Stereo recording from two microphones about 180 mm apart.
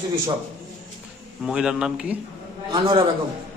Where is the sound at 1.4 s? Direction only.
5° right (ahead or behind).